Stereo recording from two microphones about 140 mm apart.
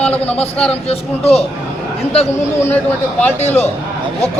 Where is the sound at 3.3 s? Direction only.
50° left (ahead or behind).